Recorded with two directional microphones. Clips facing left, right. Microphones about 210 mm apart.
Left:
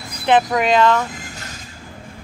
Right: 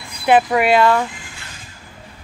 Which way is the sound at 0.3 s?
10° right (ahead or behind).